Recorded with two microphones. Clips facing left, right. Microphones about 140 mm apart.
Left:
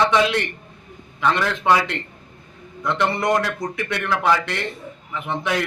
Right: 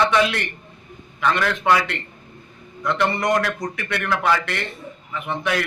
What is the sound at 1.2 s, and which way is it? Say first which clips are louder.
Speech: even; 20° left (ahead or behind).